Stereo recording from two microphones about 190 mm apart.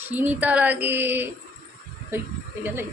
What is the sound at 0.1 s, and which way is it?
Speech, 10° right (ahead or behind).